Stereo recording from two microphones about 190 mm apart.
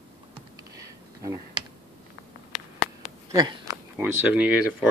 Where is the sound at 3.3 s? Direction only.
20° right (ahead or behind).